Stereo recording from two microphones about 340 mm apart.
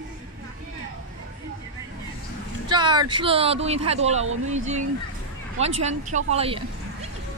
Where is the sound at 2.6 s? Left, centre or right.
Centre.